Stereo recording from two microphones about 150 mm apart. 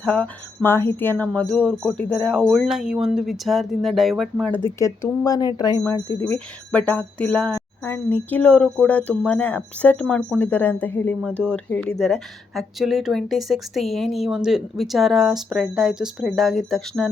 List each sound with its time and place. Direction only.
0.0 s speech: 10° left (ahead or behind)
4.8 s speech: 25° left (ahead or behind)
6.1 s a woman's voice: 10° left (ahead or behind)